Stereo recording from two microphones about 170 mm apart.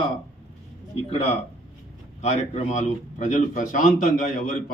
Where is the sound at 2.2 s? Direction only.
45° left (ahead or behind).